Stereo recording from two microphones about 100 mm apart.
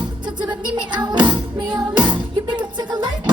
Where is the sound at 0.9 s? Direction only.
50° right (ahead or behind).